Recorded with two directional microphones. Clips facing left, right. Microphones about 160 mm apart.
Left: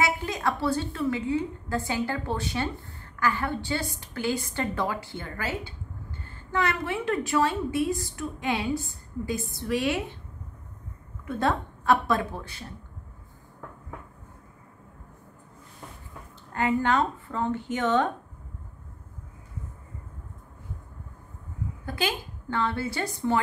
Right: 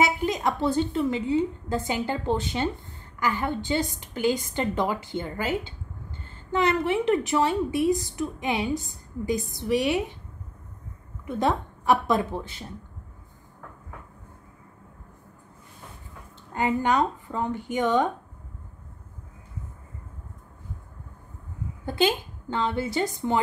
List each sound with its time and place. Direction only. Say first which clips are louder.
0.0 s a woman's voice: right 3 dB; 20° right (ahead or behind)
11.2 s a woman's voice: right 1 dB; 15° right (ahead or behind)
16.5 s speech: right 1 dB; 20° right (ahead or behind)
21.8 s a woman's voice: right 6 dB; 25° right (ahead or behind)